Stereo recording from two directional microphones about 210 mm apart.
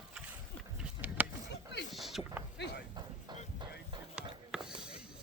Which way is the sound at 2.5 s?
55° left (ahead or behind).